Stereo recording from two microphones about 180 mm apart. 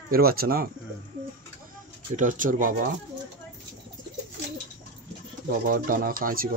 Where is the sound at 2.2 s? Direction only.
45° right (ahead or behind).